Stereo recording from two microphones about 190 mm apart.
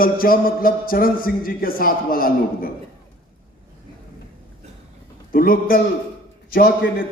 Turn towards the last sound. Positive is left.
turn(degrees=55)  # may be behind; listen again after turning